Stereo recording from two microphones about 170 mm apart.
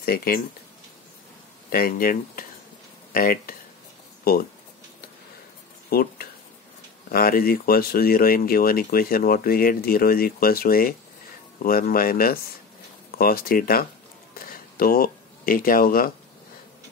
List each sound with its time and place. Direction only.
0.0 s speech: 60° left (ahead or behind)
1.7 s speech: 60° left (ahead or behind)
5.9 s speech: 60° left (ahead or behind)
14.3 s a sound: 60° left (ahead or behind)